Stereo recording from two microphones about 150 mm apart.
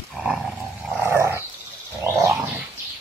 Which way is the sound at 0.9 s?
15° right (ahead or behind).